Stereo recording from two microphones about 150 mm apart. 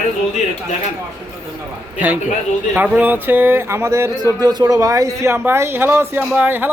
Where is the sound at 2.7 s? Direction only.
10° right (ahead or behind).